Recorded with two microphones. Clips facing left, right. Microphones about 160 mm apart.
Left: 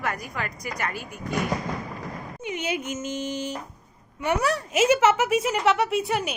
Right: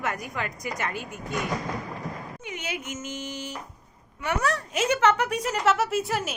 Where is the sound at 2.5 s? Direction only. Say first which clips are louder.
Left 6 dB; 20° left (ahead or behind).